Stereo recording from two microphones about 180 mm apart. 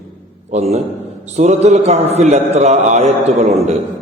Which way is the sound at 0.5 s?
35° right (ahead or behind).